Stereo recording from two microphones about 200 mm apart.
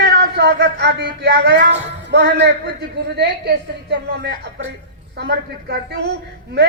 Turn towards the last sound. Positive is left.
turn(degrees=-55)  # may be behind; listen again after turning